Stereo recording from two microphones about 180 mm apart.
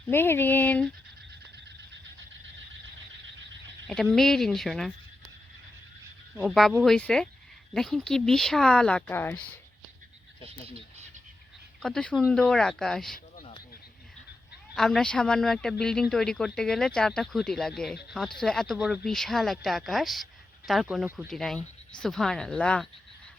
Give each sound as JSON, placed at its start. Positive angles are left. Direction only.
{"t": 0.1, "sound": "speech", "side_deg": 10}
{"t": 4.1, "sound": "speech", "side_deg": 0}
{"t": 6.4, "sound": "speech", "side_deg": 0}
{"t": 10.4, "sound": "speech", "side_deg": -35}
{"t": 11.8, "sound": "speech", "side_deg": 5}
{"t": 14.8, "sound": "speech", "side_deg": 0}